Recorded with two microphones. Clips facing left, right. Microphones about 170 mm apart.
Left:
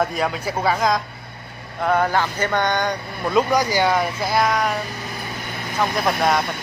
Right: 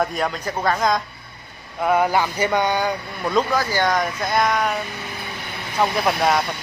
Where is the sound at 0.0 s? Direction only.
Centre (ahead or behind).